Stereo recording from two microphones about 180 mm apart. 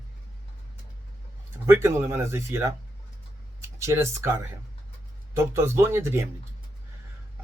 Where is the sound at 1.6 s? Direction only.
15° right (ahead or behind).